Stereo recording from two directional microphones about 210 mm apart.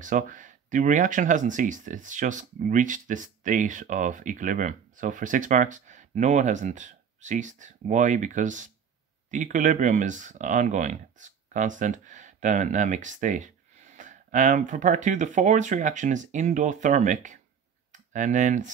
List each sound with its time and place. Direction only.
0.0 s speech: 40° right (ahead or behind)